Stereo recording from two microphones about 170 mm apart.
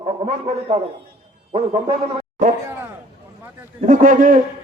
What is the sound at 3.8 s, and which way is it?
Speech, 50° right (ahead or behind).